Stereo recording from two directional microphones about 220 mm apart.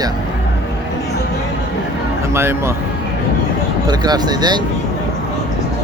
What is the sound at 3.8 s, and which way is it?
Speech, 20° right (ahead or behind).